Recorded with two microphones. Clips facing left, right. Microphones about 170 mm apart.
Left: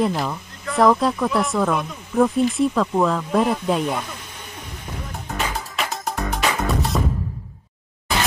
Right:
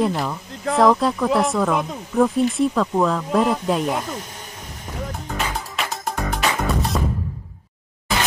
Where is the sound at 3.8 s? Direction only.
40° right (ahead or behind).